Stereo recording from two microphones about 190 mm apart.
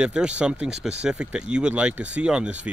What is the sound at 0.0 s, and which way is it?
Speech, 5° right (ahead or behind).